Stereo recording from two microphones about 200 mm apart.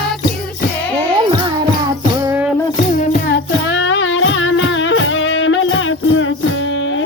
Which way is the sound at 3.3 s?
70° left (ahead or behind).